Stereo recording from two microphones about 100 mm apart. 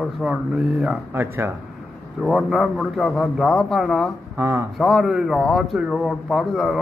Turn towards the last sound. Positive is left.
turn(degrees=0)  # may be behind; listen again after turning